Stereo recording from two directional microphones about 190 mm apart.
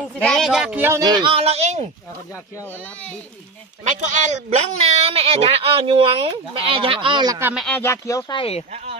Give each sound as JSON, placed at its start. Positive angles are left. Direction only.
{"t": 0.0, "sound": "speech", "side_deg": 0}
{"t": 4.1, "sound": "speech", "side_deg": -40}
{"t": 7.3, "sound": "speech", "side_deg": -10}
{"t": 7.6, "sound": "speech", "side_deg": 10}
{"t": 8.4, "sound": "speech", "side_deg": 30}